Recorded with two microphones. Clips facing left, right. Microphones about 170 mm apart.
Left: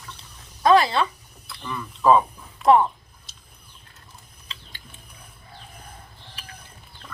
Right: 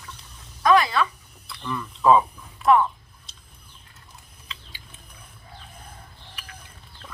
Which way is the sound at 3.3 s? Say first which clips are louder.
Even; centre (ahead or behind).